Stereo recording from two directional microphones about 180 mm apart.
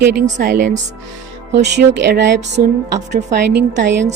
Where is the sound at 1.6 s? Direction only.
70° right (ahead or behind).